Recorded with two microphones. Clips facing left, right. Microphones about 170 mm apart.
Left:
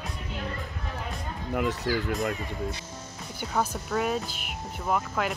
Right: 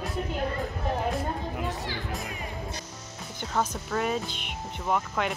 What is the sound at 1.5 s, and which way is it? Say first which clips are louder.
Speech: left 5 dB; 75° left (ahead or behind).